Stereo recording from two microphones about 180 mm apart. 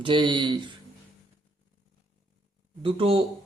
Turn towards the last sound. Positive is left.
turn(degrees=-30)  # may be behind; listen again after turning